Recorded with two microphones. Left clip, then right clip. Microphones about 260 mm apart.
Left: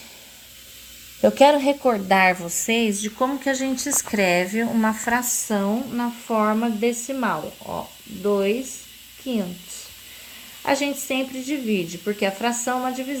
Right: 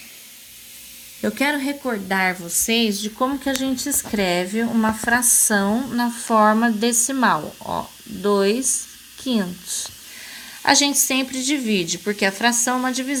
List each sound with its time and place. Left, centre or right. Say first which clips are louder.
1.2 s speech: left 7 dB; centre
2.6 s speech: right 1 dB; centre
5.5 s speech: right 4 dB; right
10.6 s a woman's voice: right 6 dB; right